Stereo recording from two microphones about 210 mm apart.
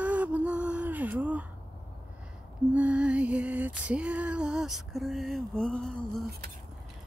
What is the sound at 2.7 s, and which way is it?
Music, 5° right (ahead or behind).